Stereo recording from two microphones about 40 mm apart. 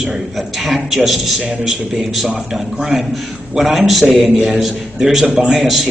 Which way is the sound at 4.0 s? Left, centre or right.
Centre.